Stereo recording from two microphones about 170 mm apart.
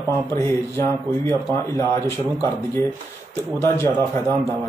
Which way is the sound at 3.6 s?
15° left (ahead or behind).